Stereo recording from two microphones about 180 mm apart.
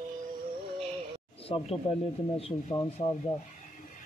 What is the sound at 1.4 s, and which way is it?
Speech, 35° left (ahead or behind).